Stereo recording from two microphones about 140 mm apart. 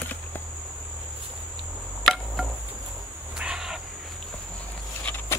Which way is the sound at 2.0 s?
Centre (ahead or behind).